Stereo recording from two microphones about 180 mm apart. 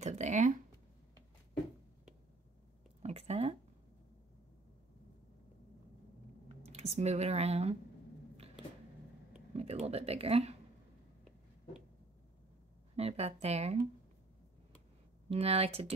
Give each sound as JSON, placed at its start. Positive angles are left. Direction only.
{"t": 0.0, "sound": "speech", "side_deg": -40}
{"t": 3.0, "sound": "a sound", "side_deg": -35}
{"t": 6.6, "sound": "speech", "side_deg": -35}
{"t": 9.5, "sound": "speech", "side_deg": -35}
{"t": 12.9, "sound": "speech", "side_deg": -35}
{"t": 15.2, "sound": "speech", "side_deg": -35}